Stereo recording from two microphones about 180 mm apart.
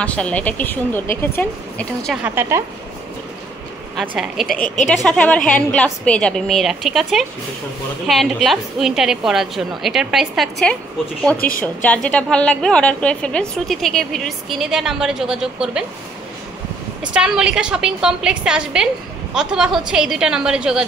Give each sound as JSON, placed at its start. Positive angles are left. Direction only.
{"t": 0.0, "sound": "a woman's voice", "side_deg": 5}
{"t": 2.2, "sound": "a woman's voice", "side_deg": -10}
{"t": 4.0, "sound": "a woman's voice", "side_deg": -5}
{"t": 11.3, "sound": "a woman's voice", "side_deg": 50}
{"t": 11.6, "sound": "a woman's voice", "side_deg": 10}
{"t": 17.0, "sound": "a woman's voice", "side_deg": -5}